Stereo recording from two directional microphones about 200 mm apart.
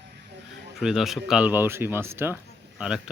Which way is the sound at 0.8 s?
Centre (ahead or behind).